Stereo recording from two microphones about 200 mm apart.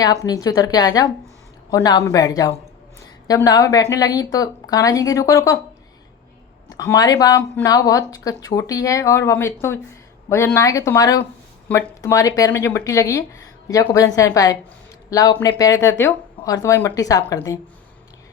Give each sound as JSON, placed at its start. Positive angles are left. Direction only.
{"t": 0.0, "sound": "a woman's voice", "side_deg": 20}
{"t": 6.7, "sound": "speech", "side_deg": 15}